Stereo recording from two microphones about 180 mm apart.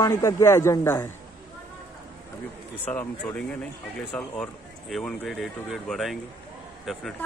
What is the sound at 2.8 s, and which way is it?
Speech, 10° left (ahead or behind).